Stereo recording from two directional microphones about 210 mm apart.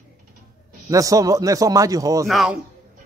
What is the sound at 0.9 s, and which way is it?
A man's voice, 15° right (ahead or behind).